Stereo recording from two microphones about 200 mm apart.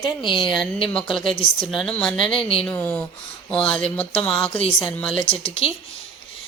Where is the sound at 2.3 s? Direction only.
30° left (ahead or behind).